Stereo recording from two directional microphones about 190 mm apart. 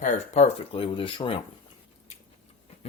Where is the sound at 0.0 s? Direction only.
35° left (ahead or behind).